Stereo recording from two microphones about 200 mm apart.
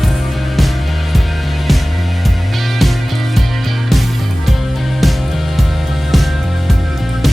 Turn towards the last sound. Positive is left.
turn(degrees=0)  # may be behind; listen again after turning